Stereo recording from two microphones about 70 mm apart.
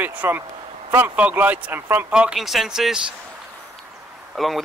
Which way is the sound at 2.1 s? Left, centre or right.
Centre.